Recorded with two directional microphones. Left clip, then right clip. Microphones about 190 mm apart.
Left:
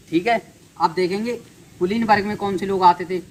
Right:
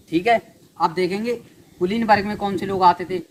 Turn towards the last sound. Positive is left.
turn(degrees=-30)  # may be behind; listen again after turning